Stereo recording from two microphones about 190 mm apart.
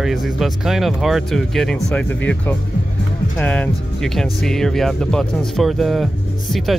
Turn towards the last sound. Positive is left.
turn(degrees=0)  # may be behind; listen again after turning